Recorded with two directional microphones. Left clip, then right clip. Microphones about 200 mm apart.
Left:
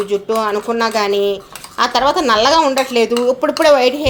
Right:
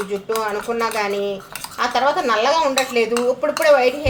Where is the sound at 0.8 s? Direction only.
45° left (ahead or behind).